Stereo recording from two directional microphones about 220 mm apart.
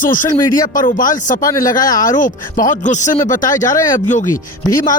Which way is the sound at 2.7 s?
35° left (ahead or behind).